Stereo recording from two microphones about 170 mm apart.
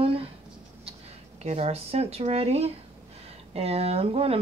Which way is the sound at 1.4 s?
40° right (ahead or behind).